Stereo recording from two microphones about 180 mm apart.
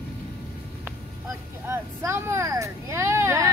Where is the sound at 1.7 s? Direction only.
15° right (ahead or behind).